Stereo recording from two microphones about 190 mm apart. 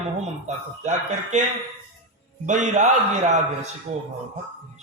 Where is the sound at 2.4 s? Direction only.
40° right (ahead or behind).